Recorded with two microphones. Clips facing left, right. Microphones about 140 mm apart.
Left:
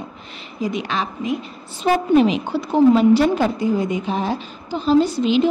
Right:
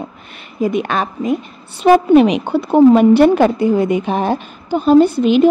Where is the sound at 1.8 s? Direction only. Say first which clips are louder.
Right 6 dB; 70° right (ahead or behind).